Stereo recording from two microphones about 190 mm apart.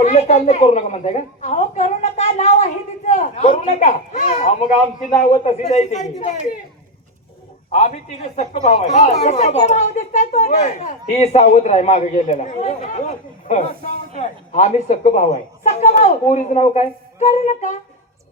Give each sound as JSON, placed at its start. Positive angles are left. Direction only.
{"t": 0.0, "sound": "a man's voice", "side_deg": 35}
{"t": 3.1, "sound": "a sound", "side_deg": 35}
{"t": 3.6, "sound": "a man's voice", "side_deg": 40}
{"t": 7.7, "sound": "a man's voice", "side_deg": 35}